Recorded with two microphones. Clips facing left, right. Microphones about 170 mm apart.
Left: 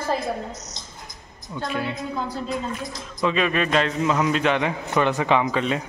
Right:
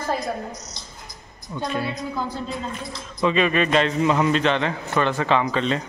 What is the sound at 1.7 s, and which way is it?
Speech, 5° left (ahead or behind).